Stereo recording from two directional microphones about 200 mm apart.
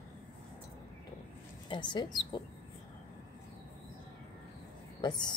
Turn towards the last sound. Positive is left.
turn(degrees=20)  # may be behind; listen again after turning